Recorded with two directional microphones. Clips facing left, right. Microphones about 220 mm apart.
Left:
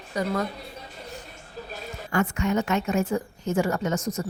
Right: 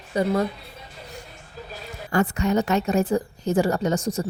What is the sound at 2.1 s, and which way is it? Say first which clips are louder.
A woman's voice: right 3 dB; 35° right (ahead or behind).